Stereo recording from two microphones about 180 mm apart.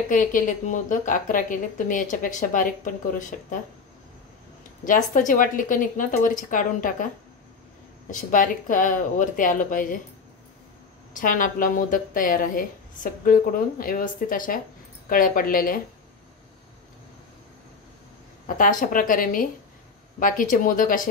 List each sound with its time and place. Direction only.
0.1 s a woman's voice: 50° left (ahead or behind)
4.8 s a woman's voice: 45° left (ahead or behind)
8.1 s a woman's voice: 45° left (ahead or behind)
11.1 s a woman's voice: 50° left (ahead or behind)
18.6 s a woman's voice: 50° left (ahead or behind)